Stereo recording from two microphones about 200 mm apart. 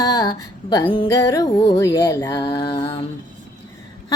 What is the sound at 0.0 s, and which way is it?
Speech, 20° left (ahead or behind).